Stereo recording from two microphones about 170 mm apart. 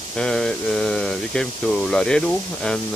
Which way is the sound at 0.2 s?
5° left (ahead or behind).